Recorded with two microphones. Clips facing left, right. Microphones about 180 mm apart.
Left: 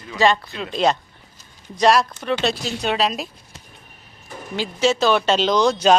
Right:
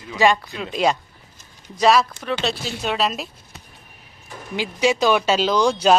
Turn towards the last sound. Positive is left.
turn(degrees=-10)  # may be behind; listen again after turning